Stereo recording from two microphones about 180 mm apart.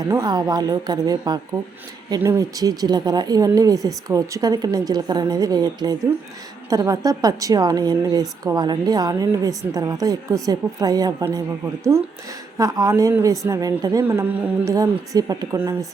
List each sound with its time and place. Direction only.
0.1 s a woman's voice: 20° right (ahead or behind)